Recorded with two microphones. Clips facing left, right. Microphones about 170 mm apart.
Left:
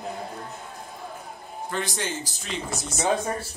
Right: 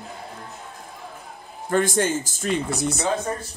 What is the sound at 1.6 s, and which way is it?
Speech, 50° right (ahead or behind).